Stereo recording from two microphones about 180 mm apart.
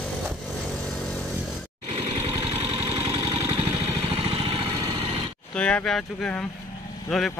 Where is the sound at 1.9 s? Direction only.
35° right (ahead or behind).